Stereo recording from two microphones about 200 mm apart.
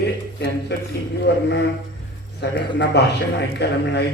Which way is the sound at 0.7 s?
55° left (ahead or behind).